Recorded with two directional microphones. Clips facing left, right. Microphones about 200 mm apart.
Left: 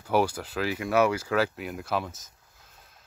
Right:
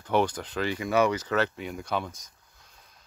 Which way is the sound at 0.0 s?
5° left (ahead or behind).